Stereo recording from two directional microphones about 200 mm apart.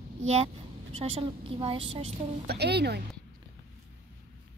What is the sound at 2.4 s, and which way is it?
Speech, 55° right (ahead or behind).